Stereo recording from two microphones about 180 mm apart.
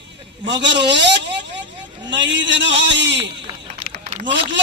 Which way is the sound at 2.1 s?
90° right.